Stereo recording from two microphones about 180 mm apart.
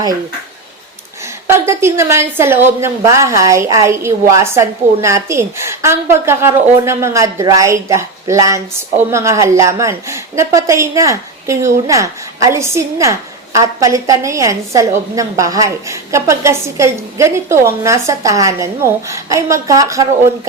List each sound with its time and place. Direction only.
1.5 s a woman's voice: 15° right (ahead or behind)